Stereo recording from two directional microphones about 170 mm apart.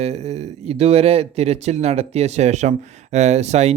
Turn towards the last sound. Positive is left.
turn(degrees=-40)  # may be behind; listen again after turning